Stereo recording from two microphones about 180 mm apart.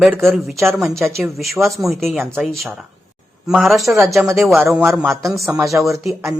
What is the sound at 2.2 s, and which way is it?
Speech, 10° right (ahead or behind).